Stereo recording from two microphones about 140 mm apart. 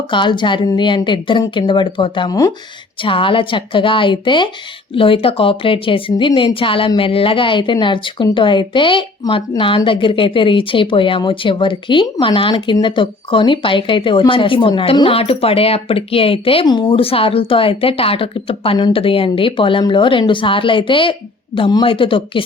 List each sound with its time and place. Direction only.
0.1 s a woman's voice: 35° left (ahead or behind)